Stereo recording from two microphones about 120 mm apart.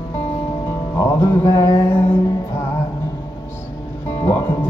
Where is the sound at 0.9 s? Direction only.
25° left (ahead or behind).